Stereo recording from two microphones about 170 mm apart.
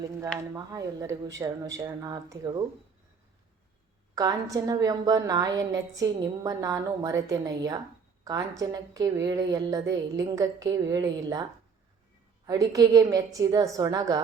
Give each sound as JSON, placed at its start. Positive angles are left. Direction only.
{"t": 0.5, "sound": "a woman's voice", "side_deg": -20}
{"t": 4.1, "sound": "a woman's voice", "side_deg": -20}
{"t": 12.5, "sound": "a woman's voice", "side_deg": -20}